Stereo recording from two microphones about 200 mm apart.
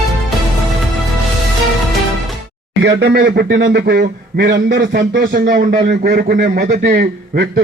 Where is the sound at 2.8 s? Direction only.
55° right (ahead or behind).